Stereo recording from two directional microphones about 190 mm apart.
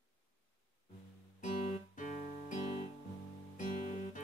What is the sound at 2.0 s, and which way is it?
Guitar, 40° left (ahead or behind).